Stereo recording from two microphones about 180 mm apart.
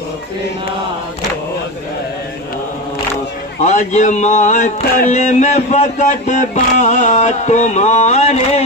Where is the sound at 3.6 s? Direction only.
40° left (ahead or behind).